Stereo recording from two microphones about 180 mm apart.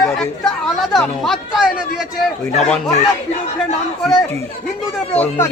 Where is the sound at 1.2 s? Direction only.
Centre (ahead or behind).